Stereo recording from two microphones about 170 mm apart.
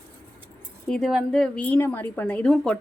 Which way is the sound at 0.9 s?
Centre (ahead or behind).